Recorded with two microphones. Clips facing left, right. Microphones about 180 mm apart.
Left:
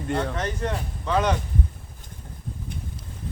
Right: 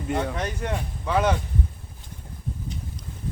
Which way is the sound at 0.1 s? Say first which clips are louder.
Even; 5° right (ahead or behind).